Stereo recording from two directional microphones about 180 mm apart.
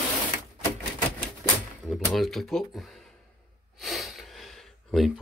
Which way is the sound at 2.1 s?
Centre (ahead or behind).